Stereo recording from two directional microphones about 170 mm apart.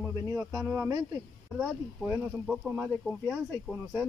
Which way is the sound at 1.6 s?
5° right (ahead or behind).